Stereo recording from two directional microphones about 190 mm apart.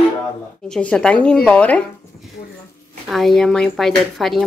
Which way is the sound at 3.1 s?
Centre (ahead or behind).